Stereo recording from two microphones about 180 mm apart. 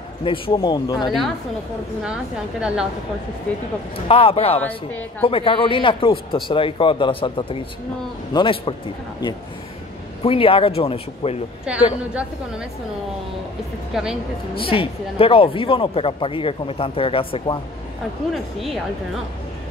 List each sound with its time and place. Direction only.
0.2 s speech: 30° left (ahead or behind)
2.0 s speech: 5° right (ahead or behind)
3.5 s a woman's voice: 5° left (ahead or behind)
4.1 s speech: 30° left (ahead or behind)
4.6 s a woman's voice: 10° left (ahead or behind)
5.2 s speech: 30° left (ahead or behind)
10.2 s speech: 30° left (ahead or behind)
12.1 s speech: 5° right (ahead or behind)
13.9 s speech: centre (ahead or behind)
14.6 s speech: 30° left (ahead or behind)
18.3 s speech: centre (ahead or behind)